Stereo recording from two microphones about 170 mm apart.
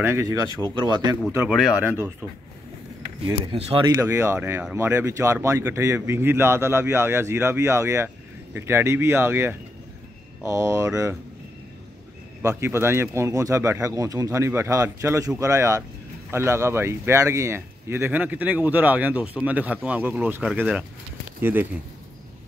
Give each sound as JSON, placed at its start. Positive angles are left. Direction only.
{"t": 0.0, "sound": "speech", "side_deg": -15}
{"t": 0.8, "sound": "speech", "side_deg": -25}
{"t": 1.5, "sound": "speech", "side_deg": 0}
{"t": 3.3, "sound": "speech", "side_deg": -35}
{"t": 3.8, "sound": "speech", "side_deg": -15}
{"t": 12.4, "sound": "speech", "side_deg": -15}